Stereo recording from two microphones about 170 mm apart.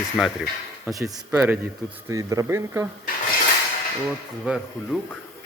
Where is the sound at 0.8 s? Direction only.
20° right (ahead or behind).